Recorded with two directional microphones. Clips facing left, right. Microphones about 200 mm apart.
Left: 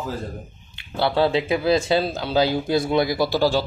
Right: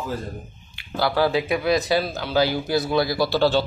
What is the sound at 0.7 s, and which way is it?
Speech, 25° left (ahead or behind).